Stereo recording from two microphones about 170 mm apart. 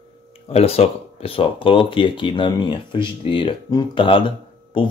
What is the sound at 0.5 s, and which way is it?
Speech, 35° left (ahead or behind).